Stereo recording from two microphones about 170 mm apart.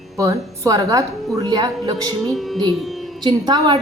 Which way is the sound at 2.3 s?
Centre (ahead or behind).